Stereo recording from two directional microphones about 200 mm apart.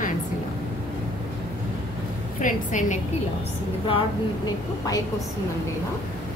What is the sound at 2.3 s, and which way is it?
Speech, 40° left (ahead or behind).